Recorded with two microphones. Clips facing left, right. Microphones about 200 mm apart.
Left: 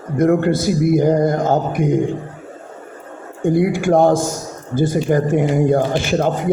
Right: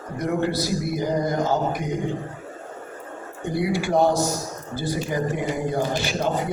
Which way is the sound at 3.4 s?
50° left (ahead or behind).